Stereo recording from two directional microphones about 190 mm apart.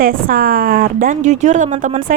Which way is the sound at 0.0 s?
50° right (ahead or behind).